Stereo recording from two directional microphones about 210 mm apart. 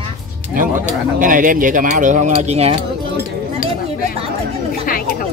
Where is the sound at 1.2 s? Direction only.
40° right (ahead or behind).